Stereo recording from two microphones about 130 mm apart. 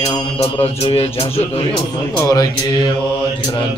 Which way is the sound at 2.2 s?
30° left (ahead or behind).